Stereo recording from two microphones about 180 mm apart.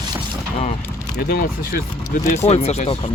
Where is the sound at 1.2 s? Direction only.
60° left (ahead or behind).